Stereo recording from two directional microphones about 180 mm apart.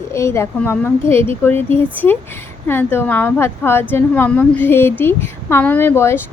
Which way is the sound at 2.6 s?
10° left (ahead or behind).